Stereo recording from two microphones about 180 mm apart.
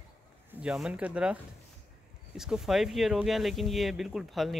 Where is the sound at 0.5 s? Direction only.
5° right (ahead or behind).